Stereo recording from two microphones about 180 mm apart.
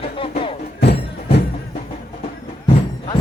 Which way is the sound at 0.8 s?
70° left (ahead or behind).